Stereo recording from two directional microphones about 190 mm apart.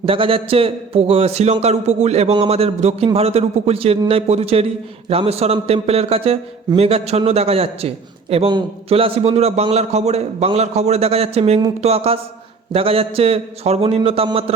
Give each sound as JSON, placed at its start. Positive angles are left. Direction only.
{"t": 0.0, "sound": "a man's voice", "side_deg": -30}